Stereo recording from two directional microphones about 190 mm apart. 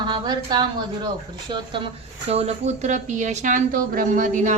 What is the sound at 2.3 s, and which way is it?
A woman's voice, 35° right (ahead or behind).